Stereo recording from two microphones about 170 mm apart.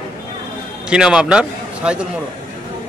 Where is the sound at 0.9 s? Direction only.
5° right (ahead or behind).